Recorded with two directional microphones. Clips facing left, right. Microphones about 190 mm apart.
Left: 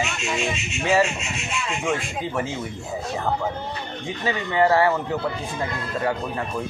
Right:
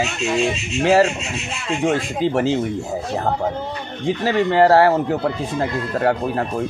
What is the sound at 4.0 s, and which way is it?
Speech, 70° right (ahead or behind).